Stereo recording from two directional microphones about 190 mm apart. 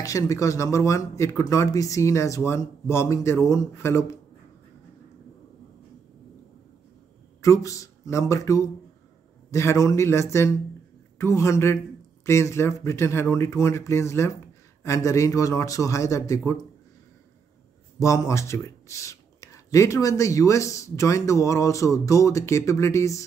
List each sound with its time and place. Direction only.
0.0 s speech: 15° left (ahead or behind)
7.4 s speech: 15° left (ahead or behind)
17.9 s speech: 15° left (ahead or behind)